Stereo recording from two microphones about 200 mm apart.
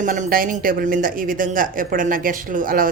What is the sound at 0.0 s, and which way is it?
Speech, 40° right (ahead or behind).